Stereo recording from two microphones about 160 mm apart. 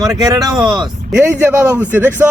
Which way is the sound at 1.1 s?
10° right (ahead or behind).